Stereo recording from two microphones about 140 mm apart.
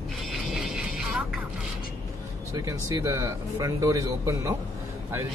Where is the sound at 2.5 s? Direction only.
25° right (ahead or behind).